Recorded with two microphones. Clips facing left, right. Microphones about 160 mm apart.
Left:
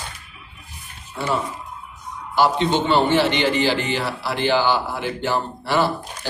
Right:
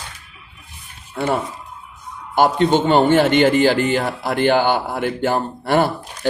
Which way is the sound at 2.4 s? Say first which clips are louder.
Right 3 dB; 50° right (ahead or behind).